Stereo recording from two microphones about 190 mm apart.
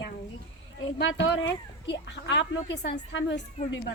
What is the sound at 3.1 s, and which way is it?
Speech, 80° left.